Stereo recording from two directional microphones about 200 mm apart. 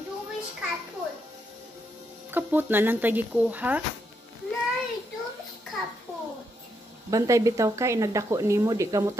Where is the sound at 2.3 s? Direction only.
10° right (ahead or behind).